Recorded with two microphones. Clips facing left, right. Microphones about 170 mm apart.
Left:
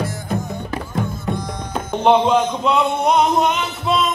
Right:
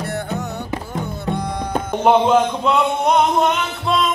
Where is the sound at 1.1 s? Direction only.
60° right (ahead or behind).